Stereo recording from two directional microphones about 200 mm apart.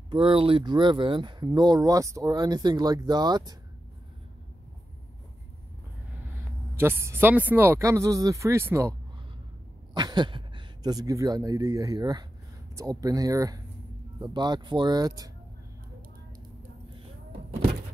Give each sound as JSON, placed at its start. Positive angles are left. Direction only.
{"t": 0.1, "sound": "speech", "side_deg": -25}
{"t": 6.8, "sound": "speech", "side_deg": -10}
{"t": 9.9, "sound": "speech", "side_deg": -20}